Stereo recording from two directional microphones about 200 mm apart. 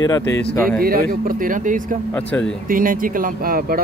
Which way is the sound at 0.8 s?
45° right (ahead or behind).